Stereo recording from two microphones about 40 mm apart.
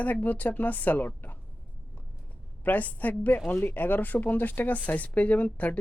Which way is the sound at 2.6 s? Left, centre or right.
Left.